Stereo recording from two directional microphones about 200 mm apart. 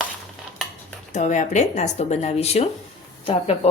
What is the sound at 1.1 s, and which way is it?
Speech, 35° left (ahead or behind).